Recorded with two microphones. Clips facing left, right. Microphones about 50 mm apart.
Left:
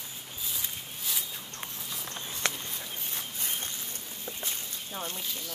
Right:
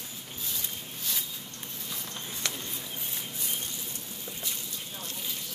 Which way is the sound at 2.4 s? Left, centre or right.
Left.